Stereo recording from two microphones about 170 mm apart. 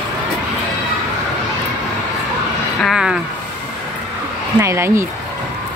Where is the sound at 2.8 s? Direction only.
5° right (ahead or behind).